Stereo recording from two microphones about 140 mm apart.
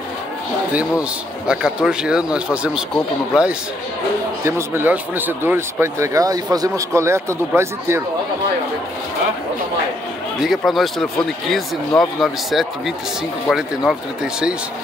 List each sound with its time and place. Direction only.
1.5 s a man's voice: 5° right (ahead or behind)
4.5 s speech: 15° right (ahead or behind)
10.4 s speech: centre (ahead or behind)